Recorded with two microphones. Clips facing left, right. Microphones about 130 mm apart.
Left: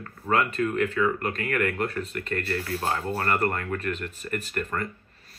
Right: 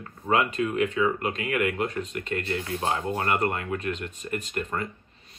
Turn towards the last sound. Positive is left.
turn(degrees=-20)  # may be behind; listen again after turning